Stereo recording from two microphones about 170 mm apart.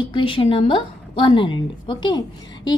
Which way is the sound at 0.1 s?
30° left (ahead or behind).